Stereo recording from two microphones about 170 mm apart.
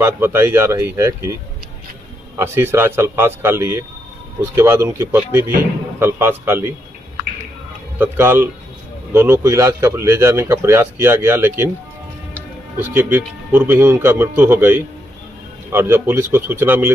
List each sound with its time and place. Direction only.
0.0 s speech: 15° right (ahead or behind)
8.0 s speech: 15° right (ahead or behind)
12.7 s speech: 10° right (ahead or behind)